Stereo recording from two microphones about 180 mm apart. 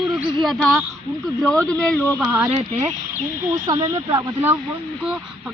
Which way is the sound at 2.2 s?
10° right (ahead or behind).